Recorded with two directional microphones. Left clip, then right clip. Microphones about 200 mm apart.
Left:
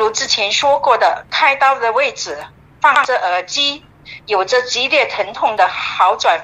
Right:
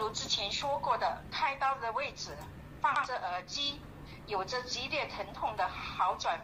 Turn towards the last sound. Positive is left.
turn(degrees=50)  # may be behind; listen again after turning